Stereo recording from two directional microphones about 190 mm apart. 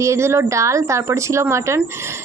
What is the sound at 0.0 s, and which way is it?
A woman's voice, 15° right (ahead or behind).